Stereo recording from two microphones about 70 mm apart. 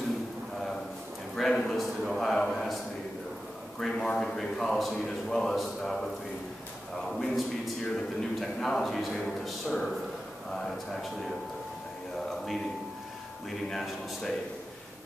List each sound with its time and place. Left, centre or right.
1.3 s a man's voice: centre
3.8 s a man's voice: centre
7.0 s a man's voice: centre
13.7 s a man's voice: centre